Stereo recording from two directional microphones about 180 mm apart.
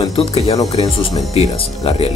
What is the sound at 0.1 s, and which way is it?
Speech, 35° left (ahead or behind).